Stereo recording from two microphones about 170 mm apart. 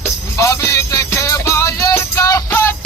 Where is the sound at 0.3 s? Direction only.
20° left (ahead or behind).